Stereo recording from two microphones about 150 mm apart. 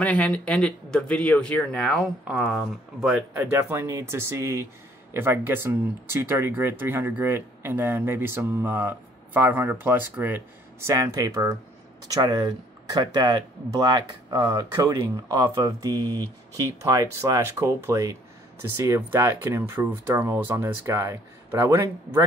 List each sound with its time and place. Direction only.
0.0 s speech: 10° left (ahead or behind)
3.3 s speech: 15° right (ahead or behind)